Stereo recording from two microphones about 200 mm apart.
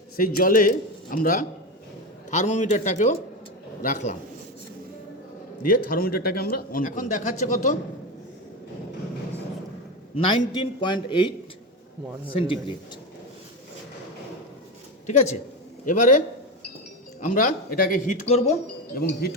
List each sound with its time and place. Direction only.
0.2 s speech: 45° left (ahead or behind)
5.6 s speech: 45° left (ahead or behind)
10.2 s a man's voice: 25° left (ahead or behind)
15.0 s speech: 35° left (ahead or behind)
18.9 s speech: 50° left (ahead or behind)